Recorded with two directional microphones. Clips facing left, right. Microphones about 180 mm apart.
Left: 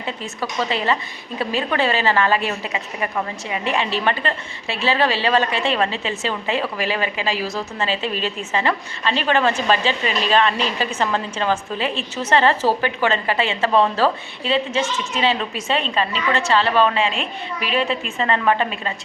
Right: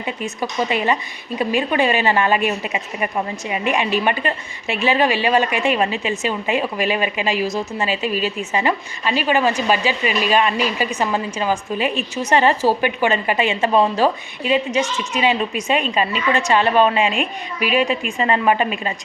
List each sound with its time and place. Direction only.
0.0 s a woman's voice: 15° right (ahead or behind)